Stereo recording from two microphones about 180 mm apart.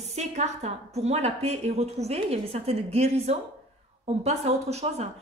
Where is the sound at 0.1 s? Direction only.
35° right (ahead or behind).